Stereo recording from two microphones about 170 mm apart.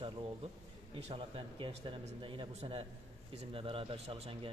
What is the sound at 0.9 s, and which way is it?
Speech, 35° right (ahead or behind).